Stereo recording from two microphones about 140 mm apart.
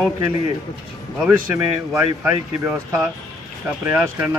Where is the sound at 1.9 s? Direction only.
10° right (ahead or behind).